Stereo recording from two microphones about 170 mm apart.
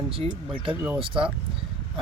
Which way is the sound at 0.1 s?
35° right (ahead or behind).